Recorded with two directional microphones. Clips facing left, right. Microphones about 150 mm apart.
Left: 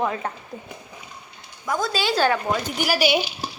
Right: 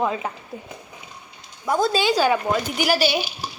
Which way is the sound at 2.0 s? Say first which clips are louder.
Right 2 dB; 15° right (ahead or behind).